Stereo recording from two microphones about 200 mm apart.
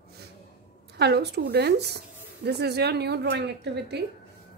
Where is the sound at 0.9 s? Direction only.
55° right (ahead or behind).